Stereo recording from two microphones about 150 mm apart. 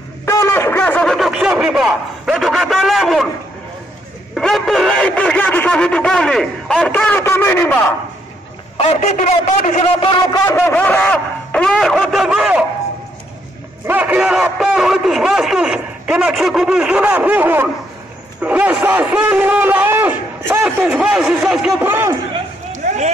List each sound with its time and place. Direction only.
0.2 s a sound: 20° left (ahead or behind); by 3.3 s centre (ahead or behind)
4.4 s speech: 5° left (ahead or behind)
8.7 s a man's voice: 45° left (ahead or behind)
10.1 s a man's voice: 25° left (ahead or behind); by 12.6 s 5° right (ahead or behind)
13.8 s a man's voice: 10° right (ahead or behind)
20.6 s a man's voice: 5° right (ahead or behind)
21.8 s a man's voice: 15° right (ahead or behind)
22.7 s a sound: 50° right (ahead or behind)